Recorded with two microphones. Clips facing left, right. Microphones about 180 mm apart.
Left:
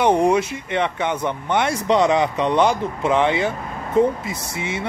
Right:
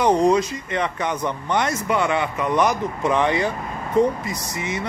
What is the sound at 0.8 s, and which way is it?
Speech, 20° left (ahead or behind).